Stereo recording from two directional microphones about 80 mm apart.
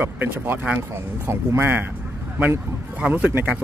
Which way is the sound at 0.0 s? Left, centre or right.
Right.